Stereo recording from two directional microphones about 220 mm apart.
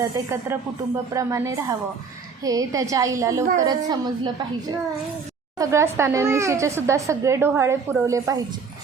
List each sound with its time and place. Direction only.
0.0 s a woman's voice: 10° right (ahead or behind)
5.5 s a woman's voice: 10° right (ahead or behind)